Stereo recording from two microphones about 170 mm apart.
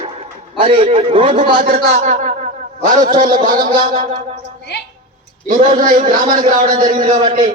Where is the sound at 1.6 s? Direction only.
60° right (ahead or behind).